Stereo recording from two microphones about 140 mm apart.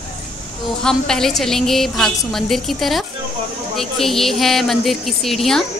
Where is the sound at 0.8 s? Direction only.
5° left (ahead or behind).